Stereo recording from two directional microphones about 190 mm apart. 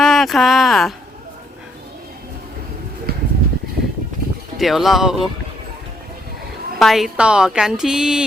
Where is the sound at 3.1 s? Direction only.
55° right (ahead or behind).